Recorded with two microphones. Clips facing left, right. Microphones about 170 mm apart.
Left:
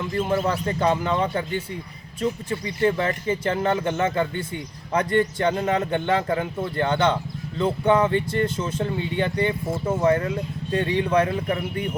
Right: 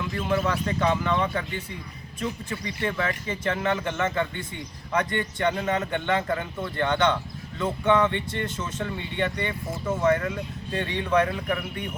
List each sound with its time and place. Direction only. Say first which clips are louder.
0.2 s speech: left 3 dB; 30° left (ahead or behind)
2.5 s speech: left 7 dB; 30° left (ahead or behind)